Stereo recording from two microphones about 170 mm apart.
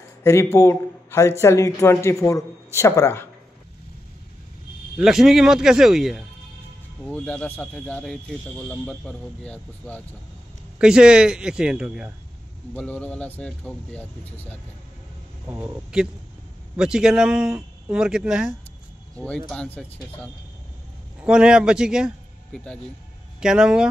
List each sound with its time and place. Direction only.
0.2 s a man's voice: 15° left (ahead or behind)
4.9 s speech: 5° right (ahead or behind)
10.8 s speech: 5° right (ahead or behind)
12.7 s speech: 10° left (ahead or behind)
15.4 s a man's voice: 15° right (ahead or behind)
16.7 s speech: 5° right (ahead or behind)
19.1 s speech: 5° left (ahead or behind)
21.2 s a man's voice: 5° right (ahead or behind)